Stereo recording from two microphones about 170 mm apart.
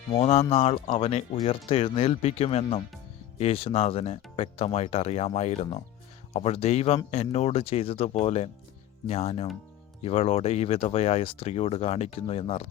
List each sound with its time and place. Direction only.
0.1 s speech: 35° left (ahead or behind)